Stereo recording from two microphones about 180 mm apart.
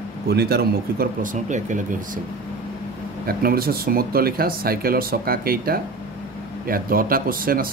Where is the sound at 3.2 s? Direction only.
55° right (ahead or behind).